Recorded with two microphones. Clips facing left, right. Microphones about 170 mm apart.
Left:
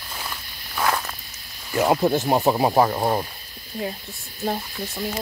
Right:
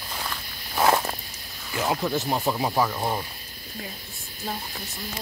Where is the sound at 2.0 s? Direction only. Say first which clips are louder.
Left 6 dB; 55° left (ahead or behind).